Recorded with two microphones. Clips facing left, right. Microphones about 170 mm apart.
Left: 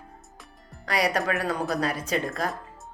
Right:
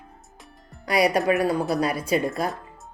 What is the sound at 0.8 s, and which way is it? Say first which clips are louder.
Speech: right 5 dB; 10° right (ahead or behind).